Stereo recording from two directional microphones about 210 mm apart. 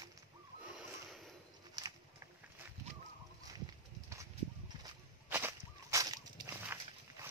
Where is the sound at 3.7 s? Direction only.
15° right (ahead or behind).